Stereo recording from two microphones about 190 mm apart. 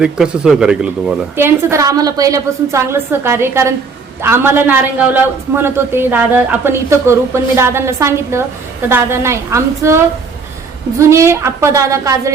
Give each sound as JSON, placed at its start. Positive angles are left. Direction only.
{"t": 0.0, "sound": "a man's voice", "side_deg": -5}